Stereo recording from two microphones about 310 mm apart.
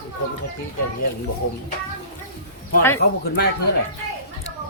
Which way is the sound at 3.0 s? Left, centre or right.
Left.